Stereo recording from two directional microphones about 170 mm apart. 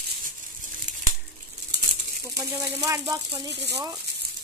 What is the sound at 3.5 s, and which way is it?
Speech, 90° right.